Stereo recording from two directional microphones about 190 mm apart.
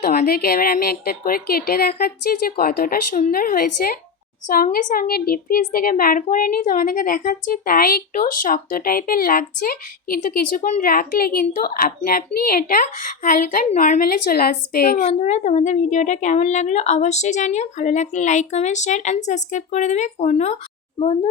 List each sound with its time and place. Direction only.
0.0 s a woman's voice: 50° left (ahead or behind); by 21.2 s 30° left (ahead or behind)